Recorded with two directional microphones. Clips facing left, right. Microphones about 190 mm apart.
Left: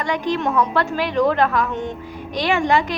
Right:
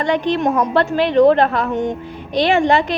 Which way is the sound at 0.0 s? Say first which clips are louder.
Right 4 dB; 25° right (ahead or behind).